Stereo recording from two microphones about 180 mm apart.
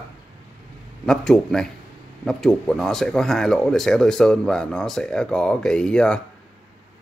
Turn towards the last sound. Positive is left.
turn(degrees=5)  # may be behind; listen again after turning